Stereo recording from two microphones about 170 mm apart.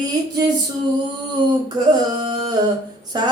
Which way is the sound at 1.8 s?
25° right (ahead or behind).